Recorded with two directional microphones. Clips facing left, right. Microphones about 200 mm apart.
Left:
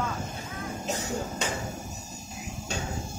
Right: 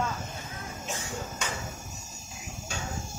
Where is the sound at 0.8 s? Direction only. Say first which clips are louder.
Left 5 dB; 40° left (ahead or behind).